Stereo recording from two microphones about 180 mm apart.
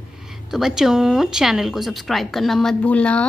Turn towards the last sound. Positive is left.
turn(degrees=5)  # may be behind; listen again after turning